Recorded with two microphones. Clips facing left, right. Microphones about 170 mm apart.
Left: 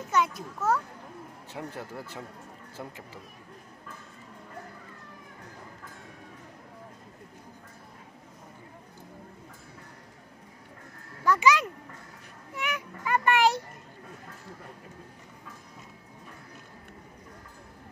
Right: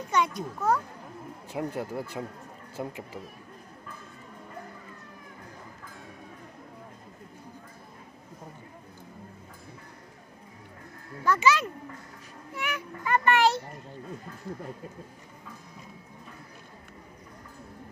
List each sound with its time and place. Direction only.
0.1 s a child's voice: 5° left (ahead or behind)
1.5 s speech: 10° right (ahead or behind)
11.2 s a child's voice: 15° left (ahead or behind)